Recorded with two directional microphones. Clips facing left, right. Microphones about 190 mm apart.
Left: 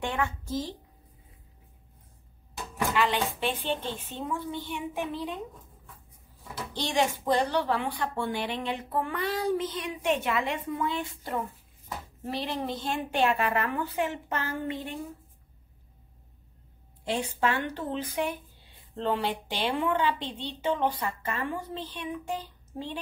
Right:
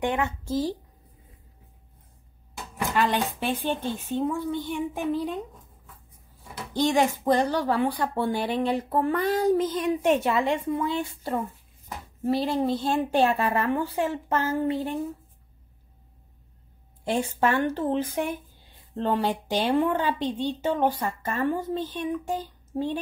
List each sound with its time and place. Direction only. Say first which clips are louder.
0.0 s speech: right 4 dB; 20° right (ahead or behind)
2.9 s a woman's voice: right 3 dB; 45° right (ahead or behind)
6.7 s a woman's voice: right 6 dB; 45° right (ahead or behind)
17.0 s a woman's voice: right 4 dB; 45° right (ahead or behind)